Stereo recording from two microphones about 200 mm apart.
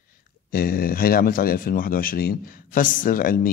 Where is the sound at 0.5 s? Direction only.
45° left (ahead or behind).